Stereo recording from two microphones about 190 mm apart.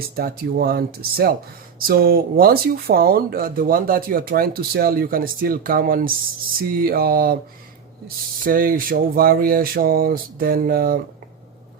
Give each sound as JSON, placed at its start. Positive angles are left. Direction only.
{"t": 0.2, "sound": "speech", "side_deg": -55}